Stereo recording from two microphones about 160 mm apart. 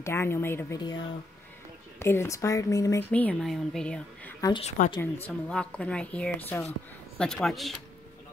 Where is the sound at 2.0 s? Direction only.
15° left (ahead or behind).